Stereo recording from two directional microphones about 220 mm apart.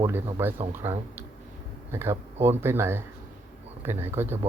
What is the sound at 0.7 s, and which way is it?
Speech, 10° right (ahead or behind).